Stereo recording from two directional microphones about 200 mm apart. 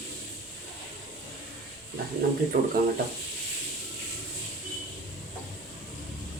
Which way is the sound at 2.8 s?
50° right (ahead or behind).